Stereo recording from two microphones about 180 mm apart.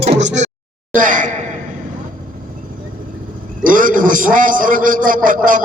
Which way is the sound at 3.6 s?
50° right (ahead or behind).